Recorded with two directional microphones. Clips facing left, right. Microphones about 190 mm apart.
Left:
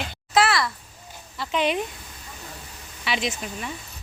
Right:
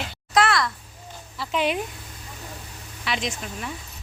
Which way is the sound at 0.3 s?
5° left (ahead or behind).